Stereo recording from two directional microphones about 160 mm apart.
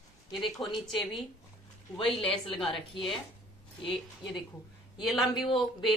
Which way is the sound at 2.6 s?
30° left (ahead or behind).